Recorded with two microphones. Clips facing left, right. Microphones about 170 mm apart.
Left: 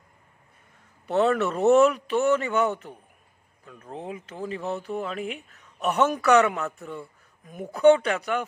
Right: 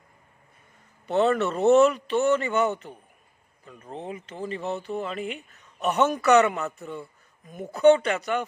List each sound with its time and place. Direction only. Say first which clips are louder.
1.0 s speech: even; 5° left (ahead or behind)
3.9 s speech: even; 5° left (ahead or behind)